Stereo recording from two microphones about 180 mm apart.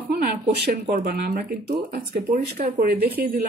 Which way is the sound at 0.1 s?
60° right (ahead or behind).